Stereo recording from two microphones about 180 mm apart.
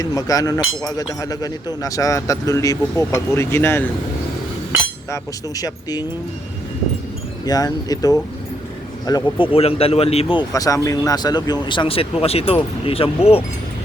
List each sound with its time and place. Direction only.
0.0 s speech: 20° left (ahead or behind)
5.1 s speech: 20° left (ahead or behind)
7.4 s speech: 20° left (ahead or behind)
10.5 s speech: 20° left (ahead or behind)